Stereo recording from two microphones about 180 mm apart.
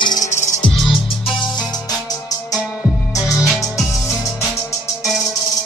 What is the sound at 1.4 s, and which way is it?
Music, 20° left (ahead or behind).